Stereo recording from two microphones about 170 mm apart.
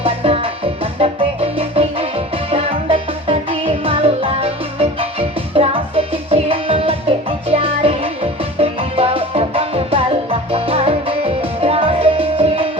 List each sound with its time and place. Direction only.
0.0 s music: 35° right (ahead or behind)